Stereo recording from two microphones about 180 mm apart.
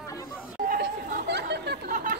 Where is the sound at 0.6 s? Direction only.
60° right (ahead or behind).